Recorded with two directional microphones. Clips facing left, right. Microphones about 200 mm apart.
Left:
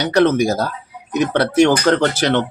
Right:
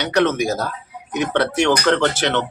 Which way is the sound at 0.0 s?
35° left (ahead or behind).